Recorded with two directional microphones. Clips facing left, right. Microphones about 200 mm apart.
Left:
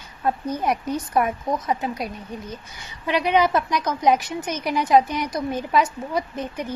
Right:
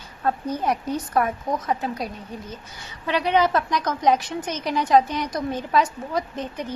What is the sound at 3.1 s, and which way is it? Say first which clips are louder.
A woman's voice: left 1 dB; 15° left (ahead or behind).